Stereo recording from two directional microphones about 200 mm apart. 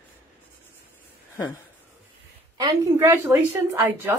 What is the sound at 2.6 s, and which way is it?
A woman's voice, 10° right (ahead or behind).